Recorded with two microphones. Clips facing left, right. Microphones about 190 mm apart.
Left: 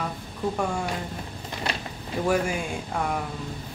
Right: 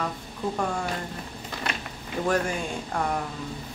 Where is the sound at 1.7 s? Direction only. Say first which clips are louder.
Left 2 dB; 35° left (ahead or behind).